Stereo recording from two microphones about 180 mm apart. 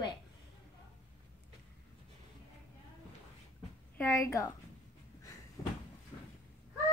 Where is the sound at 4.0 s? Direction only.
15° left (ahead or behind).